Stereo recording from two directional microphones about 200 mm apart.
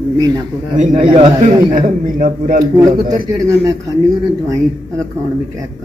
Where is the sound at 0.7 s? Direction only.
40° right (ahead or behind).